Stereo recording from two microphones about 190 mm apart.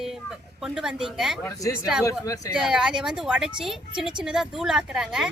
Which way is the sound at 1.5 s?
15° left (ahead or behind).